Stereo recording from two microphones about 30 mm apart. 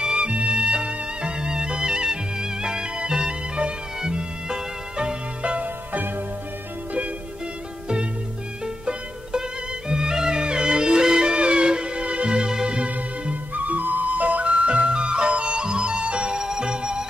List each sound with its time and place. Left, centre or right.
0.0 s music: right
5.6 s music: right
8.6 s music: right
14.4 s music: right
16.3 s music: right